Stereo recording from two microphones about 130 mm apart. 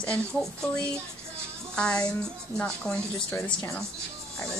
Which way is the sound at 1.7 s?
10° left (ahead or behind).